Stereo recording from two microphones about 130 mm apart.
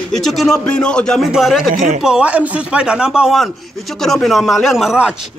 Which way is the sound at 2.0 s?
5° right (ahead or behind).